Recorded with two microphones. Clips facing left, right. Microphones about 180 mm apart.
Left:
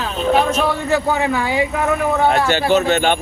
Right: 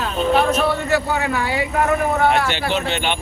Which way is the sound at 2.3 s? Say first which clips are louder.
Left 5 dB; 45° left (ahead or behind).